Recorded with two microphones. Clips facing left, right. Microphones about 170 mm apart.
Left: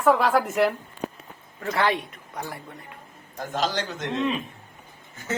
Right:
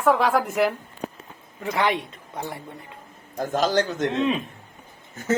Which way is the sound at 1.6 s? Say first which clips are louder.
Right 1 dB; 15° right (ahead or behind).